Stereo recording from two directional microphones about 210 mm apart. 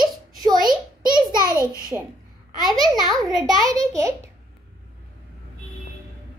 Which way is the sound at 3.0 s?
Centre (ahead or behind).